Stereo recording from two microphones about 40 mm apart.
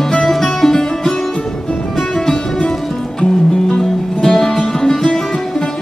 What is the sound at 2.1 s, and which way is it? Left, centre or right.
Music, centre.